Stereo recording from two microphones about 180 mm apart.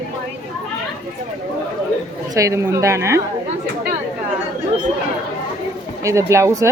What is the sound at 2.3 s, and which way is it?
Speech, 15° right (ahead or behind).